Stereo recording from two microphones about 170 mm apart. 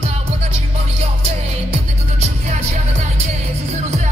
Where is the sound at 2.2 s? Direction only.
40° right (ahead or behind).